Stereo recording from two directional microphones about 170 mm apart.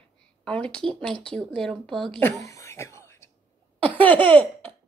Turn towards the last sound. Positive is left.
turn(degrees=10)  # may be behind; listen again after turning